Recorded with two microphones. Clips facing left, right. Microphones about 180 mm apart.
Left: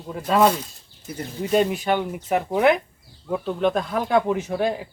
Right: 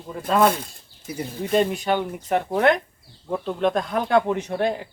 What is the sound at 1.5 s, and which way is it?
Speech, 5° left (ahead or behind).